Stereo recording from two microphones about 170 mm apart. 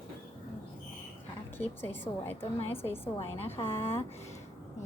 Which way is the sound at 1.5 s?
10° left (ahead or behind).